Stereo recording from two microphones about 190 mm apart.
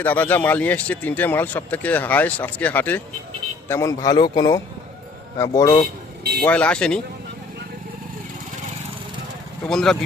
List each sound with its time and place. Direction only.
0.0 s speech: 10° left (ahead or behind)
6.4 s speech: 5° left (ahead or behind)
9.6 s speech: 5° left (ahead or behind)